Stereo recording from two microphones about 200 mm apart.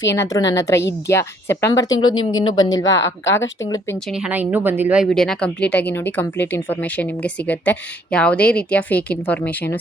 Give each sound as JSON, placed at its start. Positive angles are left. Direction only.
{"t": 0.1, "sound": "speech", "side_deg": 15}
{"t": 2.0, "sound": "speech", "side_deg": 90}
{"t": 2.7, "sound": "speech", "side_deg": 70}
{"t": 4.1, "sound": "a woman's voice", "side_deg": -5}